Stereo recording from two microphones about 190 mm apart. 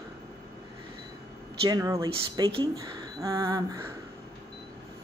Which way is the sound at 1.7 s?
20° right (ahead or behind).